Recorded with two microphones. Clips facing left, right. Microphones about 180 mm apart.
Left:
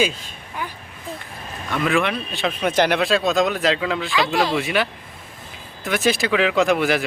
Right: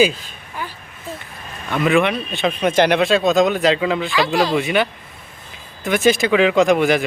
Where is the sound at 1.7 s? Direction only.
Centre (ahead or behind).